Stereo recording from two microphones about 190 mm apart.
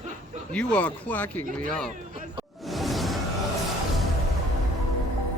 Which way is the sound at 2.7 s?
Centre (ahead or behind).